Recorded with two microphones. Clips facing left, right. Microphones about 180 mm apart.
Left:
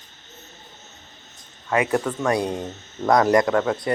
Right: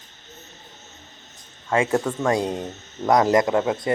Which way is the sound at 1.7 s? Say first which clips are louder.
Even; 25° right (ahead or behind).